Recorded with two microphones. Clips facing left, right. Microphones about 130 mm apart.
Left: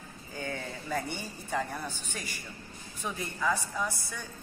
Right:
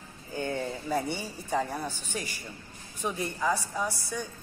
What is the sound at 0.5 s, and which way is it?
Speech, 15° right (ahead or behind).